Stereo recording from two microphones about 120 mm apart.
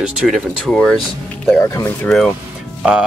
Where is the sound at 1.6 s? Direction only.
25° left (ahead or behind).